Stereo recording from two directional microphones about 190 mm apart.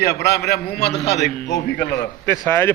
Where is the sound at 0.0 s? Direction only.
60° left (ahead or behind).